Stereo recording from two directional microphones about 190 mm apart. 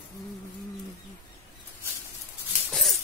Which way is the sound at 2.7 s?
Centre (ahead or behind).